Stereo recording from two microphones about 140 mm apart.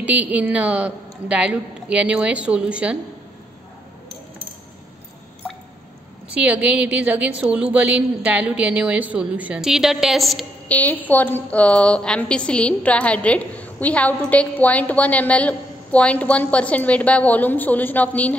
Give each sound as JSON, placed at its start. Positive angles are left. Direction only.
{"t": 0.0, "sound": "a woman's voice", "side_deg": -10}
{"t": 6.3, "sound": "a woman's voice", "side_deg": -10}
{"t": 10.7, "sound": "a woman's voice", "side_deg": 10}